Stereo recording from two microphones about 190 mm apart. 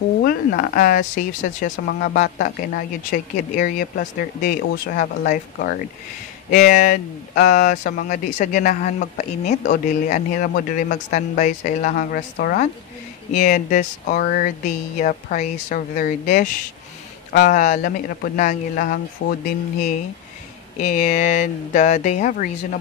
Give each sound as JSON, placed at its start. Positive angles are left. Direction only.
{"t": 0.2, "sound": "speech", "side_deg": 50}